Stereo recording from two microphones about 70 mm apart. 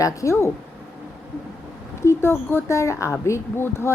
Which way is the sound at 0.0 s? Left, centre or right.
Left.